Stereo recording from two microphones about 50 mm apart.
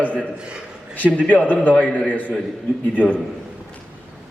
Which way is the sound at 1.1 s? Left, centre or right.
Left.